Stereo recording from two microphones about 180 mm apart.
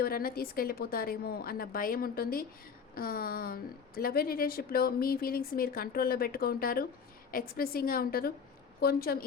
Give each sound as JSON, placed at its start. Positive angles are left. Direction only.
{"t": 0.0, "sound": "a woman's voice", "side_deg": 55}